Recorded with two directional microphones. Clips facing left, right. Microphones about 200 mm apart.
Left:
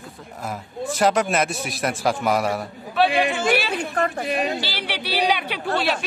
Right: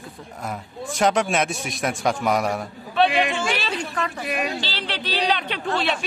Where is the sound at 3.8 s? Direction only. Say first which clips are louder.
Left 4 dB; 55° left (ahead or behind).